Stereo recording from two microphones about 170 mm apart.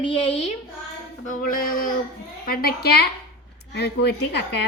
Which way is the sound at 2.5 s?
65° left (ahead or behind).